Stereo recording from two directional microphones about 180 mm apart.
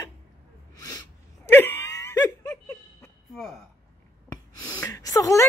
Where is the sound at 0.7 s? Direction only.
20° left (ahead or behind).